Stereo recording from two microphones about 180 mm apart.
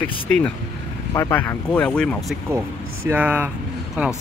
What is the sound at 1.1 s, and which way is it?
Speech, 15° left (ahead or behind).